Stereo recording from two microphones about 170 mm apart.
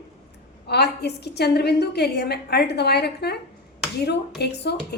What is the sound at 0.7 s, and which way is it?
A woman's voice, 75° left (ahead or behind).